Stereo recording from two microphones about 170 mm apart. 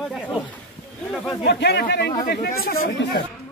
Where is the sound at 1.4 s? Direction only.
80° left.